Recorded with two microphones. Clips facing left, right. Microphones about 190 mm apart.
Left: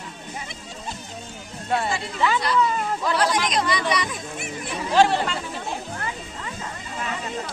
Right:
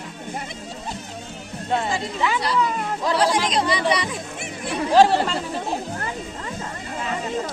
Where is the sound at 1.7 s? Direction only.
15° right (ahead or behind).